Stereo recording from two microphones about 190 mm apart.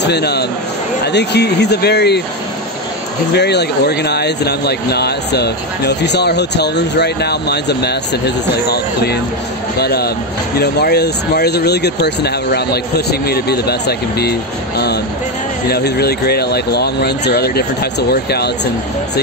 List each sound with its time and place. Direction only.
0.0 s speech: 60° left (ahead or behind)
3.3 s speech: 60° left (ahead or behind)
15.7 s speech: 55° left (ahead or behind)